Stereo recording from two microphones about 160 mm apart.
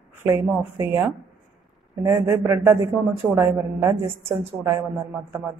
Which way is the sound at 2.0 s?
15° right (ahead or behind).